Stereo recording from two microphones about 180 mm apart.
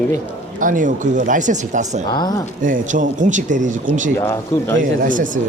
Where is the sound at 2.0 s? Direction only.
25° left (ahead or behind).